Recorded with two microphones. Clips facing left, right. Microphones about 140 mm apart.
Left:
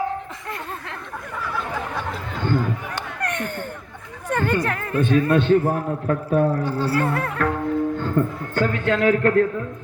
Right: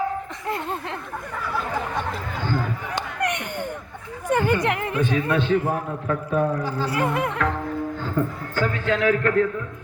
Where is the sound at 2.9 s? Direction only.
15° right (ahead or behind).